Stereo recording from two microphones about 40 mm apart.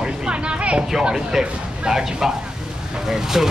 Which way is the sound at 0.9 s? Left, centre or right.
Centre.